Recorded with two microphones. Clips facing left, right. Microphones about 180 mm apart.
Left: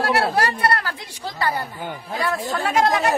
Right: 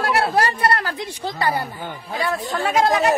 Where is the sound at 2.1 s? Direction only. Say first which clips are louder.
Right 1 dB; centre (ahead or behind).